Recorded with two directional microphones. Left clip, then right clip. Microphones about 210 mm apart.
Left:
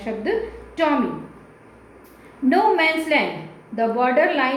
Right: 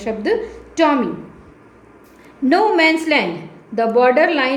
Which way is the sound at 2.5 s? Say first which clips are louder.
Right 4 dB; 50° right (ahead or behind).